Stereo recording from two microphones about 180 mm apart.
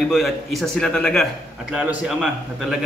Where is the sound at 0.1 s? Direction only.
Centre (ahead or behind).